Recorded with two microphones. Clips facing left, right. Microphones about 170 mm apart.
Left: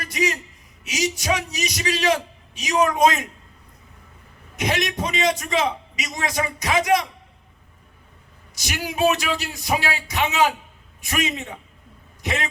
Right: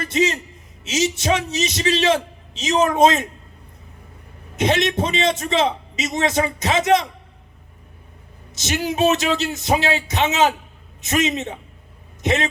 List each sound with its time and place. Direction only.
0.0 s a man's voice: 25° right (ahead or behind)
4.5 s a man's voice: 25° right (ahead or behind)
8.5 s a man's voice: 25° right (ahead or behind)